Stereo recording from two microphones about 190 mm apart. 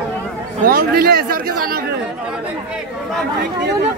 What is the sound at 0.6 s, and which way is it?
Speech, 50° right (ahead or behind).